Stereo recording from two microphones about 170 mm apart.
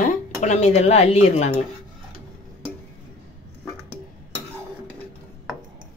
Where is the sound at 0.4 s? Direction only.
40° left (ahead or behind).